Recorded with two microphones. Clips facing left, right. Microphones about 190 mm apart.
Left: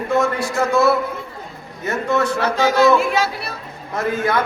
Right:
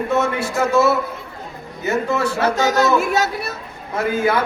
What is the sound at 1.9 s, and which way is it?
Speech, 5° right (ahead or behind).